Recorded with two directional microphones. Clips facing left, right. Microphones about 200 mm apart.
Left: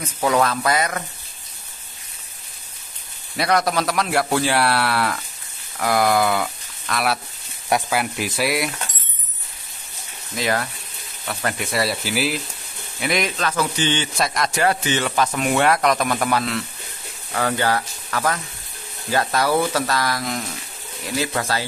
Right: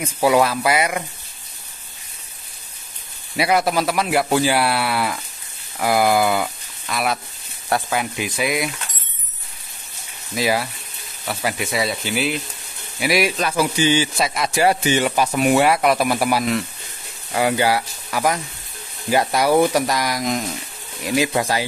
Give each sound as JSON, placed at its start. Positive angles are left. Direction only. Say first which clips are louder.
{"t": 0.0, "sound": "speech", "louder": "right 3 dB", "side_deg": -10}
{"t": 3.3, "sound": "speech", "louder": "right 2 dB", "side_deg": -5}
{"t": 10.3, "sound": "speech", "louder": "right 2 dB", "side_deg": -10}
{"t": 13.0, "sound": "speech", "louder": "right 3 dB", "side_deg": -5}